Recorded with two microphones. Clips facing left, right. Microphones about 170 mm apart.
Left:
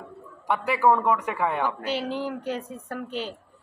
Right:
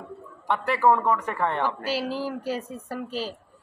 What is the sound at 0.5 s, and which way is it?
A woman's voice, 5° left (ahead or behind).